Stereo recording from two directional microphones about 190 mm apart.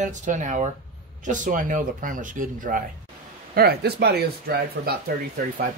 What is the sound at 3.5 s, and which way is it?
Speech, 55° right (ahead or behind).